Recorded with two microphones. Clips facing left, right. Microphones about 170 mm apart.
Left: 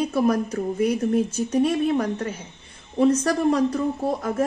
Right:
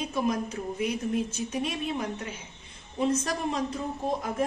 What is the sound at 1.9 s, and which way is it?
A woman's voice, 65° left (ahead or behind).